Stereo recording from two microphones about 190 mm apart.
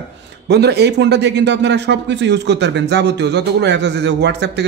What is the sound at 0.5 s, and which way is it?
A man's voice, 60° right (ahead or behind).